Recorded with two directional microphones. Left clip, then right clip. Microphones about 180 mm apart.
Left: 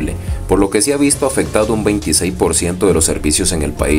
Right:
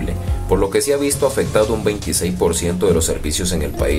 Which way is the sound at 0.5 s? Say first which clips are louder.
Left 2 dB; 25° left (ahead or behind).